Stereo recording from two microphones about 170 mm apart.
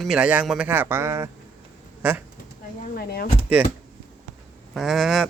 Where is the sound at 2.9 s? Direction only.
60° left (ahead or behind).